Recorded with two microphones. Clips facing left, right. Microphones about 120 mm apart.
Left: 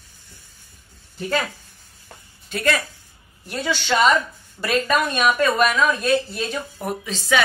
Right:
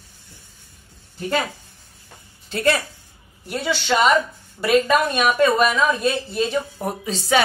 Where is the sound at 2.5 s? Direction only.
25° right (ahead or behind).